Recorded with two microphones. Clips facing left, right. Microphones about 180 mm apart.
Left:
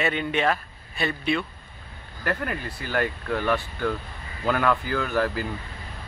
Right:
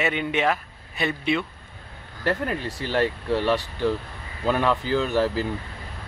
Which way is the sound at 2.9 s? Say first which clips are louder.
Right 3 dB; 30° right (ahead or behind).